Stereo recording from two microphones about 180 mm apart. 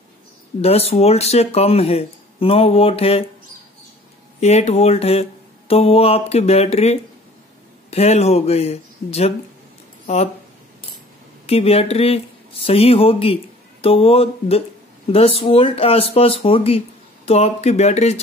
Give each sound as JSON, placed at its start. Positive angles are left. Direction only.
{"t": 0.6, "sound": "speech", "side_deg": 35}
{"t": 4.4, "sound": "speech", "side_deg": 40}
{"t": 11.4, "sound": "speech", "side_deg": 35}